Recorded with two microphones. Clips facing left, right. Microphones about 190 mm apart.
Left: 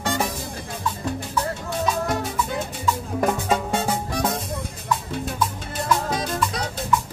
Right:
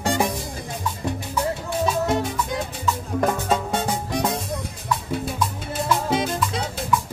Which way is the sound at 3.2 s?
5° left (ahead or behind).